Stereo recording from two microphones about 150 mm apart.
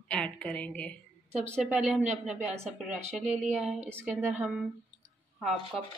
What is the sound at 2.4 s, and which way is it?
Speech, 45° right (ahead or behind).